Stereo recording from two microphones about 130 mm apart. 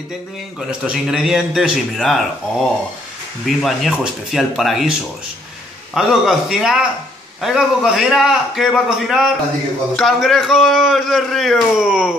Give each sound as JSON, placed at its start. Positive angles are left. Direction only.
{"t": 0.6, "sound": "a man's voice", "side_deg": -5}
{"t": 5.9, "sound": "a man's voice", "side_deg": -5}